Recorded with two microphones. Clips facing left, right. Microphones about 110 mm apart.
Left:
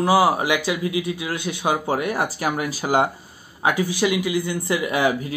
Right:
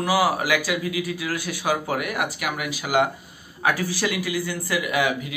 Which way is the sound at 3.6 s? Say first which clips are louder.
Left 3 dB; 20° left (ahead or behind).